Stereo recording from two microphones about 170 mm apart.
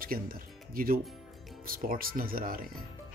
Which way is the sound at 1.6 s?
55° right (ahead or behind).